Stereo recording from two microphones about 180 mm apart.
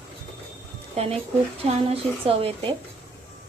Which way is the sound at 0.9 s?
35° right (ahead or behind).